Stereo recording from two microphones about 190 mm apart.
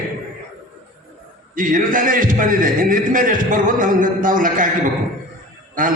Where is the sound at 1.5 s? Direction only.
45° right (ahead or behind).